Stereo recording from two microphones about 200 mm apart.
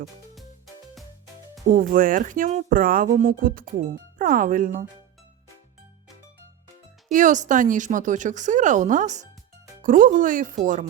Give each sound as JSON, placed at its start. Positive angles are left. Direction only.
{"t": 1.7, "sound": "speech", "side_deg": -45}
{"t": 7.1, "sound": "speech", "side_deg": -40}